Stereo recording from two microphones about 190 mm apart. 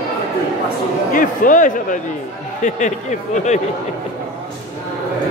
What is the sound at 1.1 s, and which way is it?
Speech, 45° left (ahead or behind).